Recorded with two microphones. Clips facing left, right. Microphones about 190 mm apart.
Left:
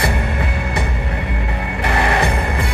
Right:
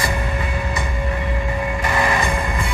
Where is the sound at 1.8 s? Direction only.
65° left (ahead or behind).